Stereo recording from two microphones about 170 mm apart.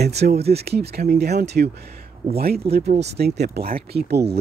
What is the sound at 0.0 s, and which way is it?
Speech, 75° right (ahead or behind).